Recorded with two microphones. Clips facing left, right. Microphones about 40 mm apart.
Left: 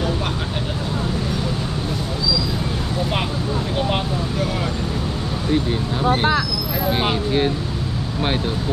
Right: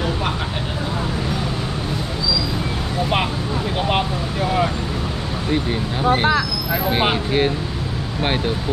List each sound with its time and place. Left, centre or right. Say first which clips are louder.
3.9 s vehicle: right 1 dB; right
5.5 s speech: left 1 dB; right